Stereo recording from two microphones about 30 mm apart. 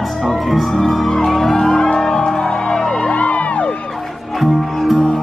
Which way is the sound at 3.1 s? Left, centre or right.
Left.